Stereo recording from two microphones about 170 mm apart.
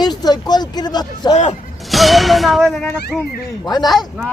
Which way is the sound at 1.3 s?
40° left (ahead or behind).